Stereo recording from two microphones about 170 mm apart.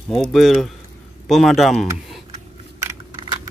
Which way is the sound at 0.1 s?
Centre (ahead or behind).